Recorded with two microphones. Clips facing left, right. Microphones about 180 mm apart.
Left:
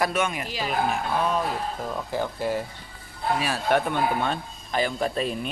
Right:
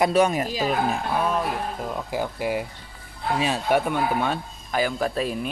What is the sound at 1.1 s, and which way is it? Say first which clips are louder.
Speech: even; 5° right (ahead or behind).